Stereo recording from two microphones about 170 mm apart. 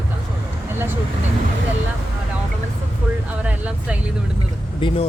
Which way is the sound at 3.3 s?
10° right (ahead or behind).